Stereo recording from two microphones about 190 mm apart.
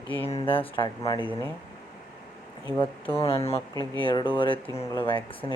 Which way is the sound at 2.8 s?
30° left (ahead or behind).